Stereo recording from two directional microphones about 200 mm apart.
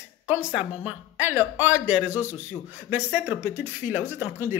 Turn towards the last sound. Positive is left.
turn(degrees=-10)  # may be behind; listen again after turning